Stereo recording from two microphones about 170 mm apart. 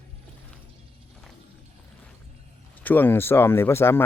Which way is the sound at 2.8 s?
10° left (ahead or behind).